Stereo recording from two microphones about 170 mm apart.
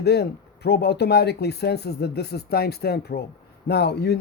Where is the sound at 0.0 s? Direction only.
75° left (ahead or behind).